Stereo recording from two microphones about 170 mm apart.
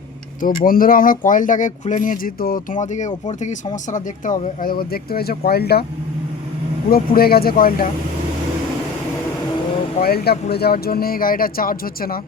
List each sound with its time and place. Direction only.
0.4 s speech: 55° left (ahead or behind)
6.9 s speech: 60° left (ahead or behind)
10.0 s speech: 65° left (ahead or behind)